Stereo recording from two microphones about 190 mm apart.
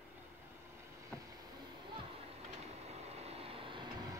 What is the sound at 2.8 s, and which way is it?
Vehicle, 35° right (ahead or behind).